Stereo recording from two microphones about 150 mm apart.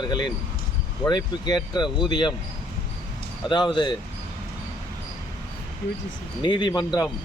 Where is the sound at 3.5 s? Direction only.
30° left (ahead or behind).